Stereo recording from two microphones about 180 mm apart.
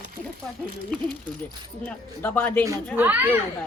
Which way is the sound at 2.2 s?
10° left (ahead or behind).